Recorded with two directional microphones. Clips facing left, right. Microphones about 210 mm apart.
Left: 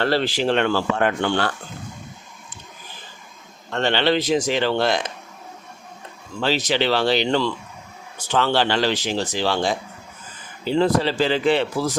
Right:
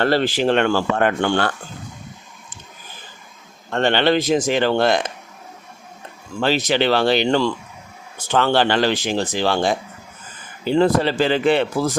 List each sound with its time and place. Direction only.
0.0 s a man's voice: 50° right (ahead or behind)
3.7 s a man's voice: 50° right (ahead or behind)
6.4 s a man's voice: 55° right (ahead or behind)